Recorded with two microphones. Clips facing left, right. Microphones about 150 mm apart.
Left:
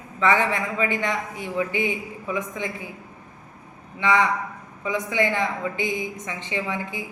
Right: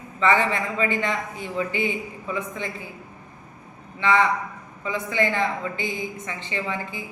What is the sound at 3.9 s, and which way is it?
A woman's voice, 15° left (ahead or behind).